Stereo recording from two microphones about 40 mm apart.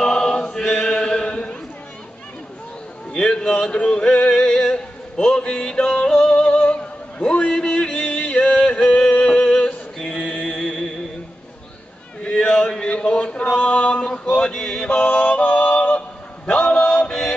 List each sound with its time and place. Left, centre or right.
0.0 s chant: centre
3.1 s male singing: left
5.4 s yodeling: left
10.0 s mantra: left
12.2 s a sound: left
12.8 s mantra: left
13.6 s male singing: left
14.3 s mantra: left
15.0 s music: left
16.4 s mantra: left